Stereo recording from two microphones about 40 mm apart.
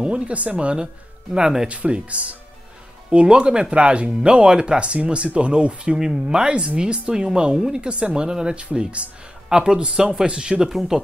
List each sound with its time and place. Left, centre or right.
0.0 s speech: right
1.4 s speech: centre
1.7 s speech: right
5.9 s speech: centre
8.7 s speech: right
9.5 s speech: centre